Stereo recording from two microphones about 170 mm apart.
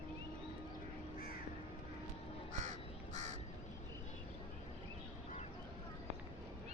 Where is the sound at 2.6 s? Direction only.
45° right (ahead or behind).